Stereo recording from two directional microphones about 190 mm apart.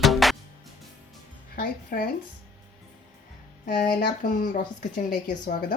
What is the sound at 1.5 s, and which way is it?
Music, 50° left (ahead or behind).